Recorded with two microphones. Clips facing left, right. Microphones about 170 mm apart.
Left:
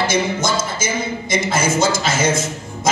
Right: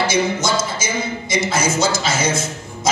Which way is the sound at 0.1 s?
50° left (ahead or behind).